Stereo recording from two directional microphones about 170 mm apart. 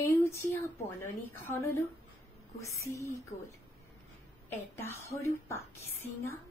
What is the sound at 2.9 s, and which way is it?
Speech, 20° left (ahead or behind).